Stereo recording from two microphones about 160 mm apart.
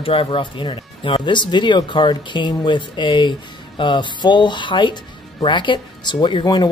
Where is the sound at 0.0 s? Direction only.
35° left (ahead or behind).